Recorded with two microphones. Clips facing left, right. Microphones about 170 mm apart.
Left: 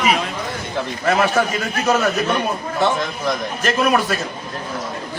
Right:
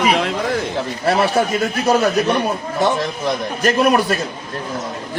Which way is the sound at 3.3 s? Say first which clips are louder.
Right 3 dB; 40° right (ahead or behind).